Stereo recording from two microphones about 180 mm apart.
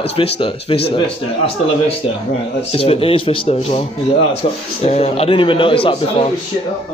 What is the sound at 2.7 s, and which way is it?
A man's voice, 35° left (ahead or behind).